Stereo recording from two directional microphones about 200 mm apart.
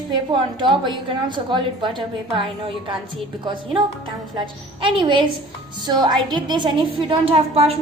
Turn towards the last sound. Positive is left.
turn(degrees=-30)  # may be behind; listen again after turning